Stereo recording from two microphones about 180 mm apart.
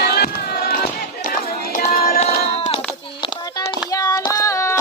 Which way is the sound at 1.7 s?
45° left (ahead or behind).